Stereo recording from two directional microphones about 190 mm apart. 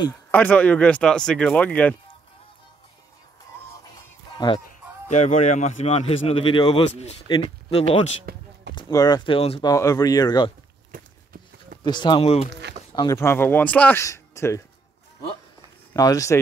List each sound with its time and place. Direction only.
0.3 s speech: 10° left (ahead or behind)
5.1 s a man's voice: 35° left (ahead or behind); by 10.5 s 20° left (ahead or behind)
11.8 s speech: 25° left (ahead or behind)
13.2 s speech: 10° left (ahead or behind)
15.9 s speech: 20° left (ahead or behind)